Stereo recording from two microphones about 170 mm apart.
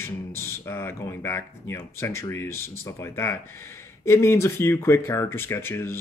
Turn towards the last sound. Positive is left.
turn(degrees=15)  # may be behind; listen again after turning